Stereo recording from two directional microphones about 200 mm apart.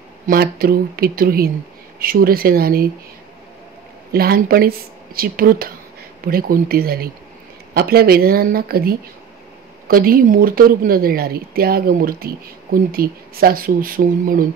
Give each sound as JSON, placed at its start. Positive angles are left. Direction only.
{"t": 0.3, "sound": "speech", "side_deg": -50}
{"t": 4.1, "sound": "speech", "side_deg": -50}